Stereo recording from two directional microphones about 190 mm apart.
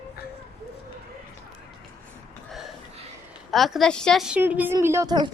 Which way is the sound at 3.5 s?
Centre (ahead or behind).